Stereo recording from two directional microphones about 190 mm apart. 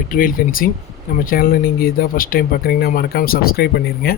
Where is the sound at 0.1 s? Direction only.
50° left (ahead or behind).